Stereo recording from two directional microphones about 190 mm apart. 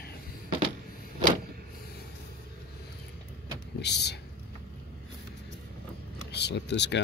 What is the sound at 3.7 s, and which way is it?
Vehicle, 60° left (ahead or behind).